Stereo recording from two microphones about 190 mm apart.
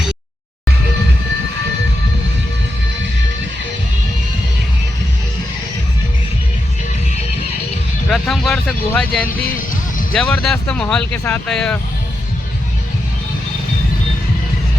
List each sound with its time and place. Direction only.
8.1 s a sound: centre (ahead or behind)
9.4 s music: 50° left (ahead or behind)
10.2 s speech: 5° left (ahead or behind)